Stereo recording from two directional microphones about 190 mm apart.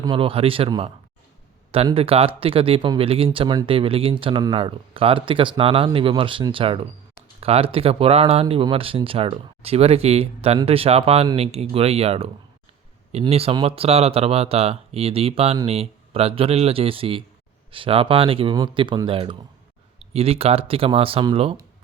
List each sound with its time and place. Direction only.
0.0 s speech: 25° right (ahead or behind)